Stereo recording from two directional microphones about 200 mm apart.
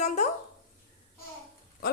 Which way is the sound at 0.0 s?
35° left (ahead or behind).